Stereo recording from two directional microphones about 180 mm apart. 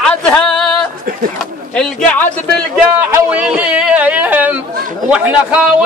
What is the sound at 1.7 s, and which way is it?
Speech, 5° left (ahead or behind).